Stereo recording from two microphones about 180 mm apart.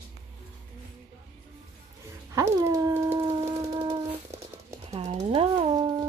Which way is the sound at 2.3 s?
20° right (ahead or behind).